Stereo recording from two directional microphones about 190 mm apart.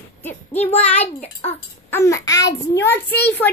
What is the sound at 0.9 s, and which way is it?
Speech, 35° left (ahead or behind).